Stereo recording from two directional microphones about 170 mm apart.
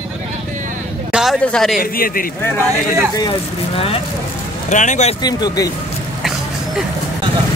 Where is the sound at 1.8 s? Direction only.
60° left (ahead or behind).